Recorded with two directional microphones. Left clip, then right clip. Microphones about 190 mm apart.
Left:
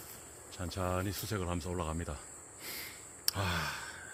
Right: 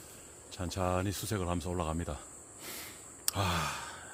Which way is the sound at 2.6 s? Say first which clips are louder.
Left 1 dB; 25° right (ahead or behind).